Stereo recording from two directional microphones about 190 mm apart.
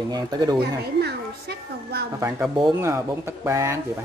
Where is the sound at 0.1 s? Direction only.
20° right (ahead or behind).